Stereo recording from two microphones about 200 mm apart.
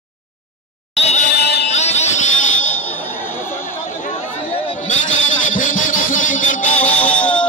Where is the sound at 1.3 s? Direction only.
55° left (ahead or behind).